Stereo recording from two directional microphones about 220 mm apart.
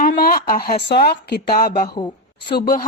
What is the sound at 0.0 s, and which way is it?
Speech, 40° left (ahead or behind).